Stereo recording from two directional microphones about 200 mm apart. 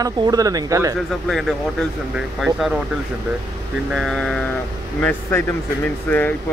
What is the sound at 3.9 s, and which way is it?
Speech, centre (ahead or behind).